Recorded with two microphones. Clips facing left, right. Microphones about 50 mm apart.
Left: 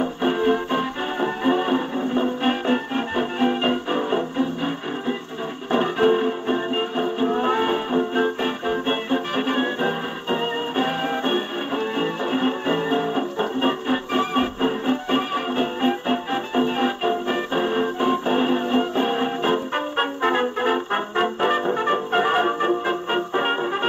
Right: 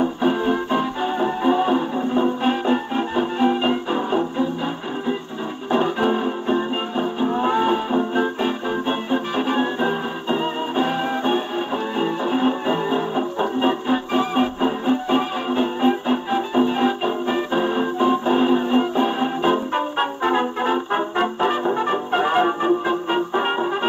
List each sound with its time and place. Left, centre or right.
0.2 s music: centre
5.8 s music: left
20.9 s brass instrument: centre
21.7 s music: centre